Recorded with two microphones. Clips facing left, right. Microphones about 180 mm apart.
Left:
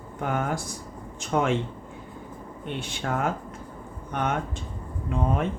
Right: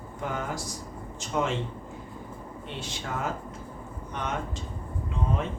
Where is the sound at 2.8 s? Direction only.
55° left (ahead or behind).